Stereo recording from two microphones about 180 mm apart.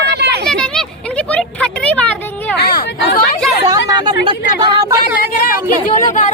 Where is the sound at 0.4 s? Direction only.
5° left (ahead or behind).